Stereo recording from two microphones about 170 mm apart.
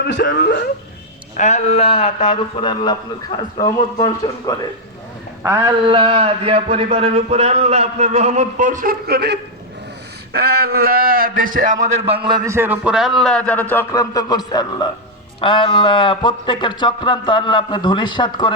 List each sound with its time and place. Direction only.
0.0 s speech: 85° left
1.4 s speech: 40° left (ahead or behind)
3.9 s speech: 20° left (ahead or behind)
5.4 s a sound: 15° right (ahead or behind)
5.8 s a sound: 30° right (ahead or behind); by 9.4 s 70° right (ahead or behind)
10.3 s a man's voice: 65° right (ahead or behind); by 12.4 s 30° right (ahead or behind)
12.5 s a man's voice: 15° right (ahead or behind); by 18.5 s 25° left (ahead or behind)